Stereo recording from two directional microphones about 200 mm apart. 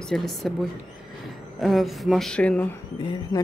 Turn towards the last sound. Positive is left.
turn(degrees=20)  # may be behind; listen again after turning